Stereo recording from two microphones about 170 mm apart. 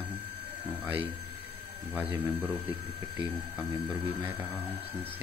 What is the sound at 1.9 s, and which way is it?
Speech, 10° right (ahead or behind).